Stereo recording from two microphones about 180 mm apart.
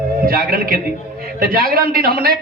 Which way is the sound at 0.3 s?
55° right (ahead or behind).